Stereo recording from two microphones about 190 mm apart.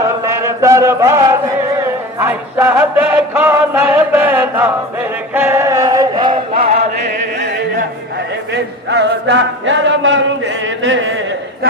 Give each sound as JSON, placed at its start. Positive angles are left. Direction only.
{"t": 0.0, "sound": "chant", "side_deg": -15}
{"t": 6.6, "sound": "chant", "side_deg": -40}
{"t": 7.0, "sound": "chant", "side_deg": -65}